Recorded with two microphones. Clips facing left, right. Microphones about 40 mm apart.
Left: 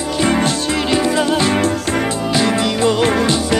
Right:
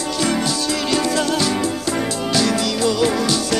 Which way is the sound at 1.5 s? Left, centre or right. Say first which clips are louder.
Left 4 dB; left.